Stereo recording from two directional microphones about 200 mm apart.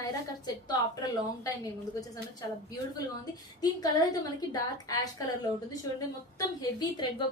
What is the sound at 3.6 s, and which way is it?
A woman's voice, 20° left (ahead or behind).